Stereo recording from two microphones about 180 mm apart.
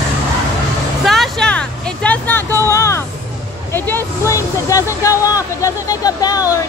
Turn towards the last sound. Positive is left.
turn(degrees=20)  # may be behind; listen again after turning